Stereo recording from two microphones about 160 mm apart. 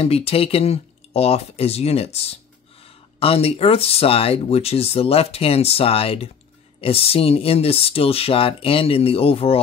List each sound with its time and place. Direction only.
0.0 s speech: 40° left (ahead or behind)